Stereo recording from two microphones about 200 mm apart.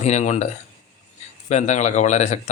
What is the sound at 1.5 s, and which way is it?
Speech, 35° left (ahead or behind).